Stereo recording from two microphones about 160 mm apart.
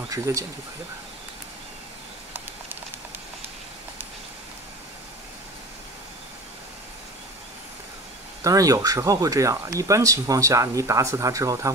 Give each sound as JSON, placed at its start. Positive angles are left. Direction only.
{"t": 0.1, "sound": "speech", "side_deg": -20}
{"t": 8.5, "sound": "speech", "side_deg": -20}